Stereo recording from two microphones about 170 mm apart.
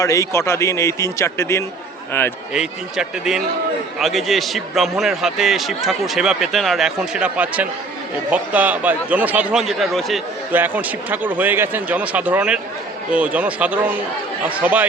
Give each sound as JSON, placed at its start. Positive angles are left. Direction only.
{"t": 0.0, "sound": "a man's voice", "side_deg": 20}
{"t": 2.5, "sound": "a man's voice", "side_deg": -5}
{"t": 10.5, "sound": "speech", "side_deg": -10}